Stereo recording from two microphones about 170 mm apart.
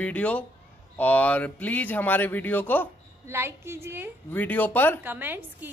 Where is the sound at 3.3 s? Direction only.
15° right (ahead or behind).